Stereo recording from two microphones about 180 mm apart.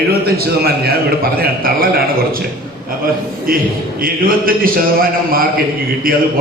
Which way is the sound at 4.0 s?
55° right (ahead or behind).